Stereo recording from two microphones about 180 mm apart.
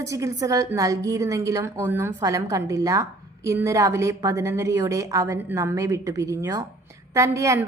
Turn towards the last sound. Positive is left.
turn(degrees=-15)  # may be behind; listen again after turning